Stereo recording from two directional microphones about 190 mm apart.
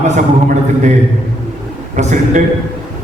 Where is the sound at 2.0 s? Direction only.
40° right (ahead or behind).